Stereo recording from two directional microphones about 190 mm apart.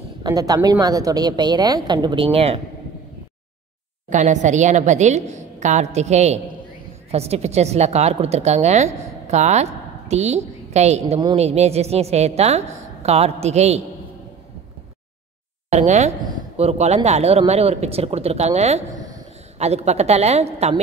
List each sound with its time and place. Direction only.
0.2 s a woman's voice: 20° right (ahead or behind)
4.1 s speech: 40° right (ahead or behind)
15.7 s speech: 35° right (ahead or behind)